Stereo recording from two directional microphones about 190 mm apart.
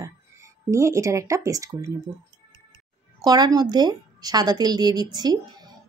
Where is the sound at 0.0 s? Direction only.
15° right (ahead or behind).